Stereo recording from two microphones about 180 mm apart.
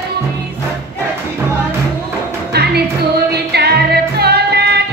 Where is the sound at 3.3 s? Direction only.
65° right (ahead or behind).